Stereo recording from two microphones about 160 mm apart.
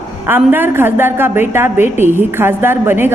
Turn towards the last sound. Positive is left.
turn(degrees=-15)  # may be behind; listen again after turning